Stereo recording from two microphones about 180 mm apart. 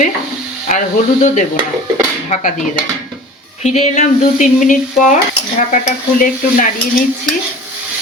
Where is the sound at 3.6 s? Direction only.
40° left (ahead or behind).